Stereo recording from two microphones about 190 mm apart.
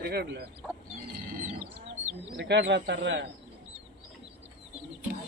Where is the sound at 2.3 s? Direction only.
70° right (ahead or behind).